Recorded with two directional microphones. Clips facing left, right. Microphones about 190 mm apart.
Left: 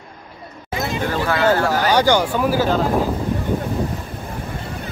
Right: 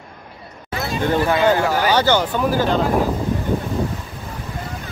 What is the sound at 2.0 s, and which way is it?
Speech, 10° left (ahead or behind).